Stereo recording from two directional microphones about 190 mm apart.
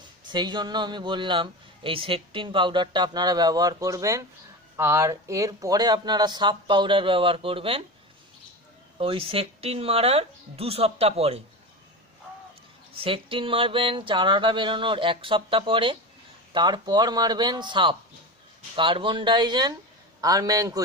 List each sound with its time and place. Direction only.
0.3 s a man's voice: 25° right (ahead or behind)
9.0 s speech: 30° right (ahead or behind)
13.0 s a man's voice: 30° right (ahead or behind)